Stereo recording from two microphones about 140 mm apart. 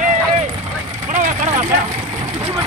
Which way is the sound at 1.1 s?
65° right (ahead or behind).